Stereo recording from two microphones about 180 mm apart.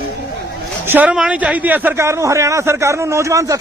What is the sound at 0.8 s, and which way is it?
A man's voice, 10° right (ahead or behind).